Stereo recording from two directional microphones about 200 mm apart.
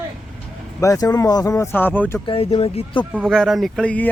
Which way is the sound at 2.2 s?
25° left (ahead or behind).